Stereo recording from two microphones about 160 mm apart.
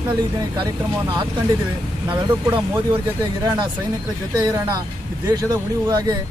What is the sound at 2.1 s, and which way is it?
Speech, 30° right (ahead or behind).